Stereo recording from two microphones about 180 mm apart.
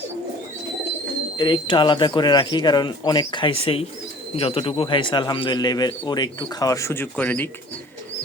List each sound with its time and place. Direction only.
1.4 s speech: 25° left (ahead or behind); by 7.5 s 10° left (ahead or behind)